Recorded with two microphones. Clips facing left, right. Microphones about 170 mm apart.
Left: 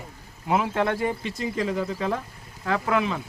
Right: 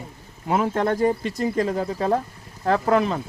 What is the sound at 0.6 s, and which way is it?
Speech, 40° right (ahead or behind).